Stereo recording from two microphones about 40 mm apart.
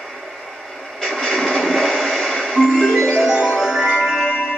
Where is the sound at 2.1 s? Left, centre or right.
Centre.